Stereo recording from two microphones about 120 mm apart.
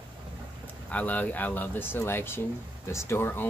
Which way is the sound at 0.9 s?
15° left (ahead or behind).